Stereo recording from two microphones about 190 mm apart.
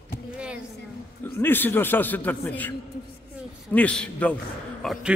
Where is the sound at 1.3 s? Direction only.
10° left (ahead or behind).